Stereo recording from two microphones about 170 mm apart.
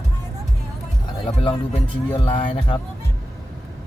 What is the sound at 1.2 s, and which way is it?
Speech, 30° left (ahead or behind).